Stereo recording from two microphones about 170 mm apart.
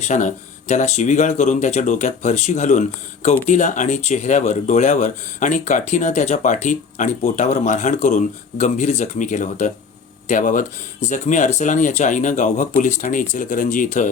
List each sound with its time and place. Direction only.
0.0 s speech: 45° left (ahead or behind)